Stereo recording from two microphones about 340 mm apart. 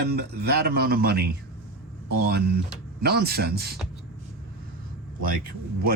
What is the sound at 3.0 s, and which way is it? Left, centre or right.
Speech, right.